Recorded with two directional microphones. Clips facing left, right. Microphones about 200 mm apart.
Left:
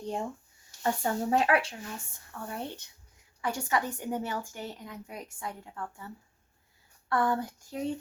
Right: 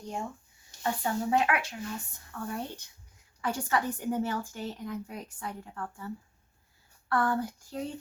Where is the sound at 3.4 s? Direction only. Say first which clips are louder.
Right 1 dB; 15° left (ahead or behind).